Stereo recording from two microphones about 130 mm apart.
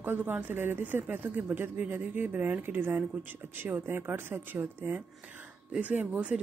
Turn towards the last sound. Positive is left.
turn(degrees=-10)  # may be behind; listen again after turning